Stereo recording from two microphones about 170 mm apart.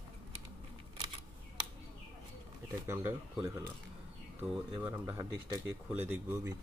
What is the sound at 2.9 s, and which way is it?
Speech, 15° right (ahead or behind).